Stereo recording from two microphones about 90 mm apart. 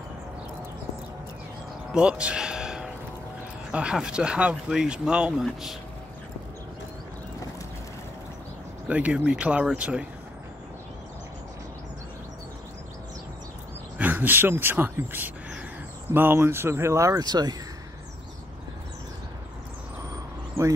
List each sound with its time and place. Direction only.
1.9 s music: 10° right (ahead or behind)
3.7 s speech: 10° right (ahead or behind)
8.8 s speech: 15° right (ahead or behind)
13.9 s speech: 20° right (ahead or behind); by 17.6 s 50° right (ahead or behind)